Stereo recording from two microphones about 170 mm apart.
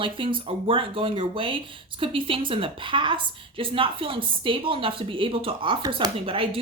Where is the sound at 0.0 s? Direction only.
30° right (ahead or behind).